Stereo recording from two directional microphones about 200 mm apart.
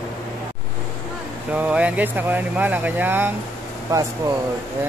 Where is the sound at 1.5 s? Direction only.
5° right (ahead or behind).